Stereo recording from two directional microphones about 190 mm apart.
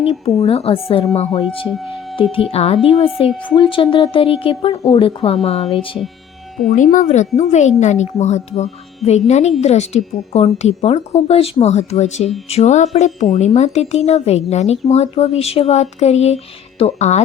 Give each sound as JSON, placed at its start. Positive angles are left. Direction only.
{"t": 0.3, "sound": "speech", "side_deg": 30}
{"t": 2.5, "sound": "a woman's voice", "side_deg": 30}
{"t": 6.7, "sound": "speech", "side_deg": 40}